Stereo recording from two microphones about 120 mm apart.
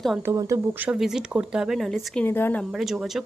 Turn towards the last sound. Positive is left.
turn(degrees=0)  # may be behind; listen again after turning